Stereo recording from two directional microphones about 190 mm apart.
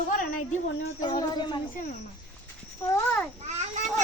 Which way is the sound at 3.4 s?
35° right (ahead or behind).